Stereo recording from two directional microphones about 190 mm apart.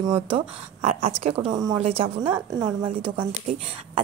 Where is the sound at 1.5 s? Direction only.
20° right (ahead or behind).